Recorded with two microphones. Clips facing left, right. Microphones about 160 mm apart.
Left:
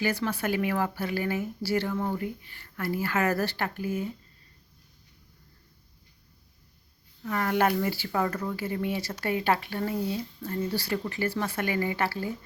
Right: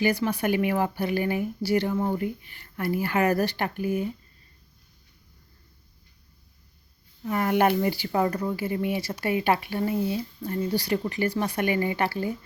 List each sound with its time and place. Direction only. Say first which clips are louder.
0.0 s speech: right 4 dB; 15° right (ahead or behind)
7.2 s speech: right 3 dB; 15° right (ahead or behind)